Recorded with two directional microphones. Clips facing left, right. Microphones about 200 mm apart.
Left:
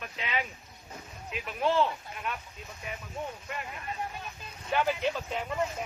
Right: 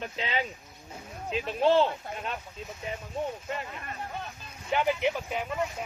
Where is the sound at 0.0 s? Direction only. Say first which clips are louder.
Right 3 dB; 30° right (ahead or behind).